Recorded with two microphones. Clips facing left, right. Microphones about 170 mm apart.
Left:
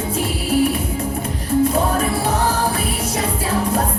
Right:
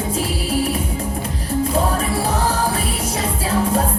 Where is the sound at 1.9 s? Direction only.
35° right (ahead or behind).